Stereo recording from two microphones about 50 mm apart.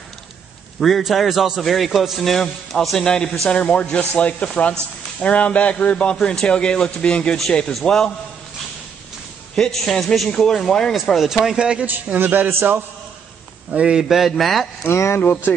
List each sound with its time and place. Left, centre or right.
0.7 s a man's voice: centre
3.4 s a man's voice: left
9.6 s speech: centre
11.1 s speech: centre
11.8 s a sound: right
12.4 s a man's voice: right
13.7 s speech: centre
14.0 s a man's voice: centre
14.8 s speech: left
15.1 s speech: left